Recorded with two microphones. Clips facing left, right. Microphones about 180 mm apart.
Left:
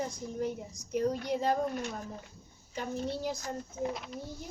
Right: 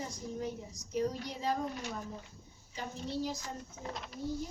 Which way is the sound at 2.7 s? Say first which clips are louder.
Left 5 dB; 55° left (ahead or behind).